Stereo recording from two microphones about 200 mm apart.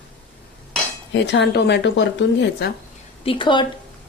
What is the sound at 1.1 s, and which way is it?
Speech, 60° left (ahead or behind).